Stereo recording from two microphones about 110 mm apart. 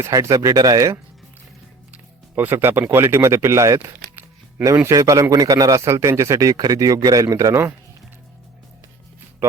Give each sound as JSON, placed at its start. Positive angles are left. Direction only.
{"t": 0.0, "sound": "speech", "side_deg": -30}
{"t": 1.9, "sound": "speech", "side_deg": -20}